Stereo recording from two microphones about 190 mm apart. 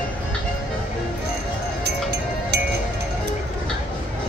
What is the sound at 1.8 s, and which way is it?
Music, 60° right (ahead or behind).